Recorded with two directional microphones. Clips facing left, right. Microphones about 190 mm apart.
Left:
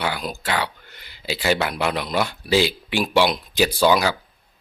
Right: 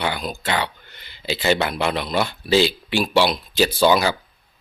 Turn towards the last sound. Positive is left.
turn(degrees=10)  # may be behind; listen again after turning